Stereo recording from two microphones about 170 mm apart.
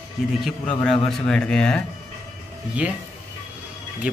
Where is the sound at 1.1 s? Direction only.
5° left (ahead or behind).